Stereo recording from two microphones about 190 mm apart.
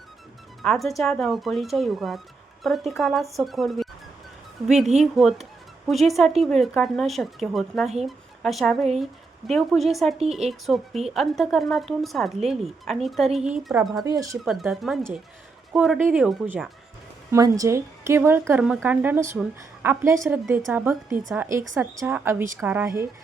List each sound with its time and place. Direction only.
0.6 s speech: centre (ahead or behind)
4.9 s speech: centre (ahead or behind)
14.0 s speech: 20° right (ahead or behind)
14.4 s speech: centre (ahead or behind)
17.3 s a woman's voice: 15° right (ahead or behind)